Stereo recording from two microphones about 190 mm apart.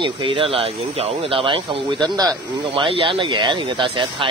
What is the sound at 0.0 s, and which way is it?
Speech, 25° right (ahead or behind).